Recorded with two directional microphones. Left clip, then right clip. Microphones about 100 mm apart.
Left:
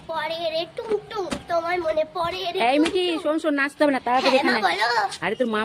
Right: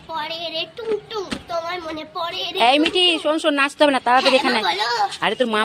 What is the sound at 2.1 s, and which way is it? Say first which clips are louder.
Speech: even; 55° left (ahead or behind).